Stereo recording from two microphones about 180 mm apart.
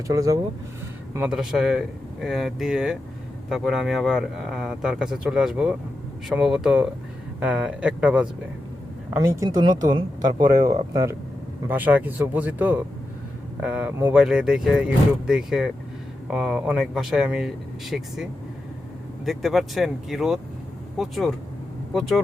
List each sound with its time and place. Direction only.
0.1 s speech: 20° right (ahead or behind)
1.1 s speech: 5° right (ahead or behind)